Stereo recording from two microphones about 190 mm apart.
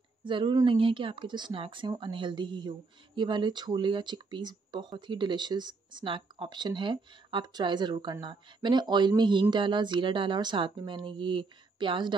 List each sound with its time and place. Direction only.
0.2 s speech: 25° right (ahead or behind)